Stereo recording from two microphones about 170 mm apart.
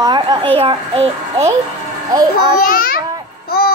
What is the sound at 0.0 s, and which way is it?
A woman's voice, 25° right (ahead or behind).